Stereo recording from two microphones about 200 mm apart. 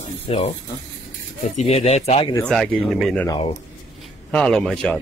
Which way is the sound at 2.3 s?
Centre (ahead or behind).